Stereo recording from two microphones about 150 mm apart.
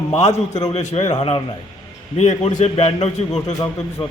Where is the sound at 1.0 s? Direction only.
30° left (ahead or behind).